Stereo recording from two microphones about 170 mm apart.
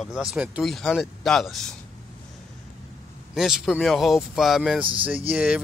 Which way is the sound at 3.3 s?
Centre (ahead or behind).